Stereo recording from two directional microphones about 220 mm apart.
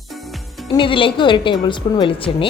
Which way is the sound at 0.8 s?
25° left (ahead or behind).